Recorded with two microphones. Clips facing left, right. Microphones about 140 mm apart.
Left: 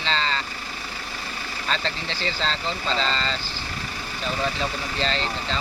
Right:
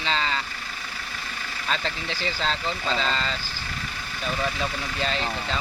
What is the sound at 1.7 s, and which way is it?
Speech, 10° right (ahead or behind).